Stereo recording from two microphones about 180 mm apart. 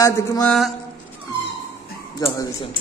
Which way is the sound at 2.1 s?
25° left (ahead or behind).